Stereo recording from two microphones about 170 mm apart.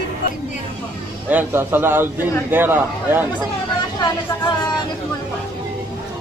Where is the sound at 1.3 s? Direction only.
15° right (ahead or behind).